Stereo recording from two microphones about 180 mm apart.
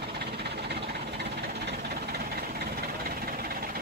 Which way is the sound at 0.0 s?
60° right (ahead or behind).